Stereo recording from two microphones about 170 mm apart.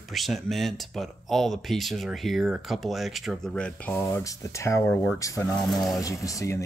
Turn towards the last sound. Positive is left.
turn(degrees=20)  # may be behind; listen again after turning